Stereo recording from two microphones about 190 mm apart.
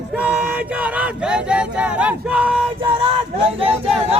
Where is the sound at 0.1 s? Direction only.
5° right (ahead or behind).